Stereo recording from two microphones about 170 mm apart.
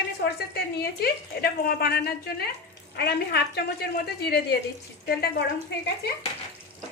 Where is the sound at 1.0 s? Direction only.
65° left (ahead or behind).